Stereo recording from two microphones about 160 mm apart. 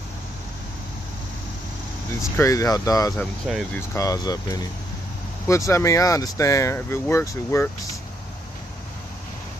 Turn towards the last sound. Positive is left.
turn(degrees=15)  # may be behind; listen again after turning